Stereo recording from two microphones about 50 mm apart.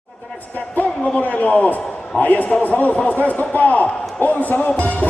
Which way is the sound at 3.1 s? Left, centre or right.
Left.